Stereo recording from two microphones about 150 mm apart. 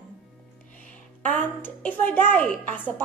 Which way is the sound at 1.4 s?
10° left (ahead or behind).